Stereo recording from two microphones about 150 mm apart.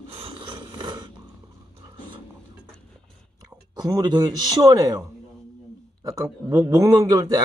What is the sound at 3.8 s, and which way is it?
A man's voice, 25° right (ahead or behind).